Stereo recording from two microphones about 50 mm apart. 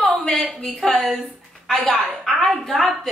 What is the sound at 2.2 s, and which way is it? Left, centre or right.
Speech, centre.